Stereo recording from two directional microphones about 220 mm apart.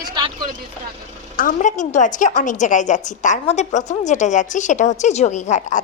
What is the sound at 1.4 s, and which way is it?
A woman's voice, 35° left (ahead or behind).